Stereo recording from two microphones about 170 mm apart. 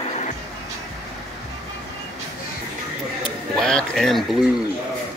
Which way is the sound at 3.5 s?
5° left (ahead or behind).